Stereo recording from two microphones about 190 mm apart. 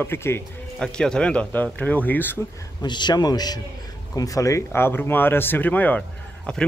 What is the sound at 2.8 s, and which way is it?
A man's voice, 25° left (ahead or behind).